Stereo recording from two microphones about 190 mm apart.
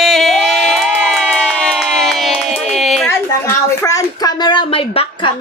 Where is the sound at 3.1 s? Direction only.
15° left (ahead or behind).